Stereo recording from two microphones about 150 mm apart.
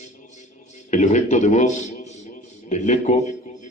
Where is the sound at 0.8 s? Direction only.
50° left (ahead or behind).